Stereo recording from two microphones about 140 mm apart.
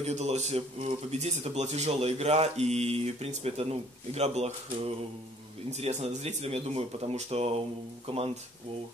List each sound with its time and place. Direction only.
0.0 s speech: 50° right (ahead or behind)